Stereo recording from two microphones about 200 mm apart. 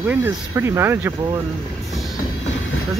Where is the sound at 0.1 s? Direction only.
10° right (ahead or behind).